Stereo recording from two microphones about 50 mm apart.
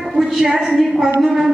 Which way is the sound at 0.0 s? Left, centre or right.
Centre.